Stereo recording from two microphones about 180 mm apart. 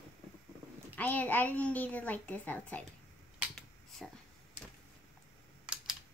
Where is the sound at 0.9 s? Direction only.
10° left (ahead or behind).